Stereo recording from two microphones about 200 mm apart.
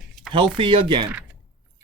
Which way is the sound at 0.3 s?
25° right (ahead or behind).